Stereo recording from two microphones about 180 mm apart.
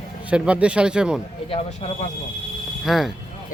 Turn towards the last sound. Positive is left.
turn(degrees=0)  # may be behind; listen again after turning